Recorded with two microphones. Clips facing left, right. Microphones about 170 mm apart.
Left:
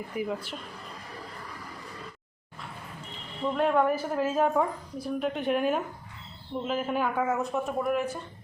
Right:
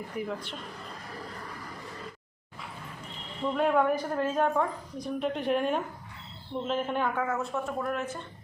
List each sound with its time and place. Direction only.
0.2 s speech: 5° left (ahead or behind)
3.4 s a woman's voice: centre (ahead or behind)
7.2 s speech: 15° left (ahead or behind)